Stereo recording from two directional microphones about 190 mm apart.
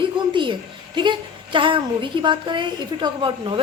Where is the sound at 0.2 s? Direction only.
25° right (ahead or behind).